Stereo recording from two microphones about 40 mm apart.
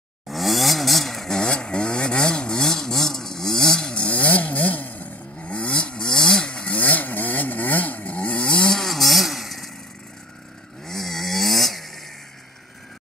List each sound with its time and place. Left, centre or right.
0.3 s chainsaw: centre; by 2.6 s left
2.6 s chainsaw: centre
3.9 s chainsaw: left
5.4 s chainsaw: left
6.8 s chainsaw: left
8.6 s chainsaw: centre
10.9 s chainsaw: centre